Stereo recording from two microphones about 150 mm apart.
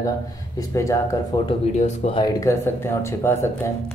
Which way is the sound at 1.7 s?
50° left (ahead or behind).